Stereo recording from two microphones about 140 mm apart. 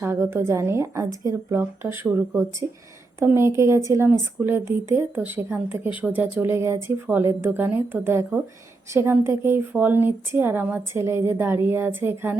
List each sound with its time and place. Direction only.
0.0 s a woman's voice: 15° right (ahead or behind)